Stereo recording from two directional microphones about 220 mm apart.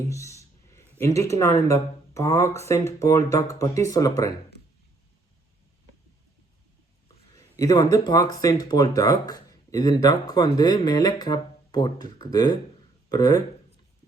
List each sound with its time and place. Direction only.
0.1 s speech: 15° left (ahead or behind)
7.6 s speech: 15° left (ahead or behind)